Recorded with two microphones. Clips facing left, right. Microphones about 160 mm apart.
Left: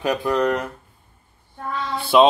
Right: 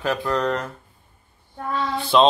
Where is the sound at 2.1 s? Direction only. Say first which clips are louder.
Left 2 dB; 10° left (ahead or behind).